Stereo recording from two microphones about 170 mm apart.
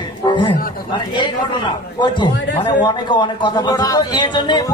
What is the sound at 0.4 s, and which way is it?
Speech, 25° left (ahead or behind).